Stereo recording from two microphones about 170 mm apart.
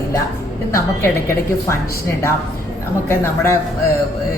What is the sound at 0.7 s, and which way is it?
Speech, 15° left (ahead or behind).